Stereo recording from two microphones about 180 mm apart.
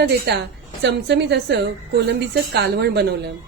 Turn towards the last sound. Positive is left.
turn(degrees=-65)  # may be behind; listen again after turning